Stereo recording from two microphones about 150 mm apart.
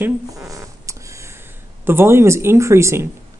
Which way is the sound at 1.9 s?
15° right (ahead or behind).